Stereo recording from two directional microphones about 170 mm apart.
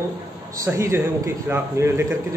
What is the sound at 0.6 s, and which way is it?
A man's voice, 15° right (ahead or behind).